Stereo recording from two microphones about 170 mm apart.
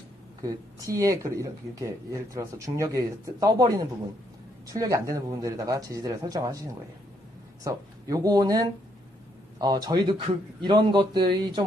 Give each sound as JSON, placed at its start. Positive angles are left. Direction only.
{"t": 0.4, "sound": "a man's voice", "side_deg": -20}
{"t": 7.6, "sound": "a man's voice", "side_deg": -20}